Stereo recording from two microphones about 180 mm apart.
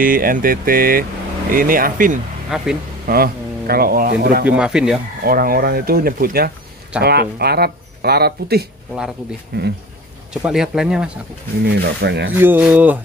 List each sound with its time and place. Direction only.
0.0 s speech: 50° right (ahead or behind)
2.5 s speech: 5° right (ahead or behind)
3.1 s speech: 55° right (ahead or behind)
4.5 s speech: 5° right (ahead or behind)
5.2 s speech: 55° right (ahead or behind)
10.3 s speech: 5° right (ahead or behind)
11.6 s speech: 65° right (ahead or behind)
12.4 s speech: 10° right (ahead or behind)